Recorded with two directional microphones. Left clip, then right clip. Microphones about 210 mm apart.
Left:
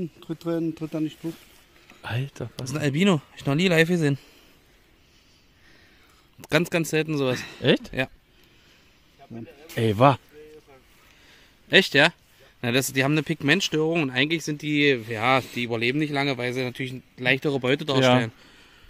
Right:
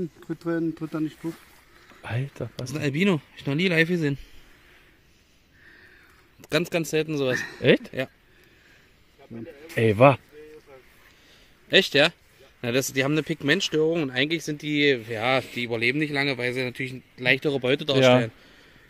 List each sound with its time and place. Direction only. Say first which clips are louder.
0.2 s speech: even; 35° left (ahead or behind)
2.0 s speech: even; centre (ahead or behind)
2.5 s speech: left 2 dB; 40° left (ahead or behind)
6.4 s speech: left 2 dB; 50° left (ahead or behind)
7.6 s speech: right 2 dB; centre (ahead or behind)
9.8 s speech: right 2 dB; 5° right (ahead or behind)
11.7 s a man's voice: left 1 dB; 50° left (ahead or behind)